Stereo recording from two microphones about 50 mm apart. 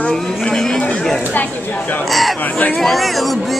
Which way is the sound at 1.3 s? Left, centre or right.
Left.